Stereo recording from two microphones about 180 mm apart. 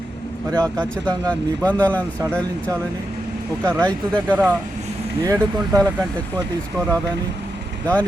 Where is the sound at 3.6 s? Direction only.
5° left (ahead or behind).